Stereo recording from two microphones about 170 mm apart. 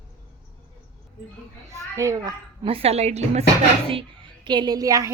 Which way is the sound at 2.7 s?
35° right (ahead or behind).